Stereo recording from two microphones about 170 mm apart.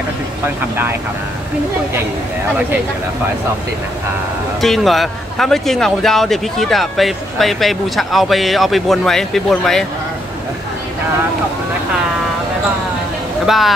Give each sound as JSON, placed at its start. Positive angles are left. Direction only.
{"t": 4.6, "sound": "a man's voice", "side_deg": 0}
{"t": 13.5, "sound": "a man's voice", "side_deg": 0}